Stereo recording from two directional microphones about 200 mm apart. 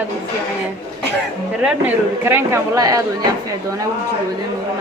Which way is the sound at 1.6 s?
5° right (ahead or behind).